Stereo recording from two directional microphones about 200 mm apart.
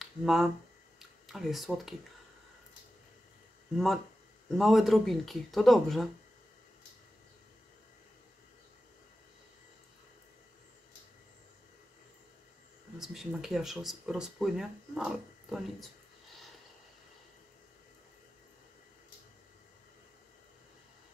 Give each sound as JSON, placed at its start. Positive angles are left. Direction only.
{"t": 0.0, "sound": "speech", "side_deg": 0}
{"t": 3.7, "sound": "speech", "side_deg": 0}
{"t": 13.0, "sound": "speech", "side_deg": 0}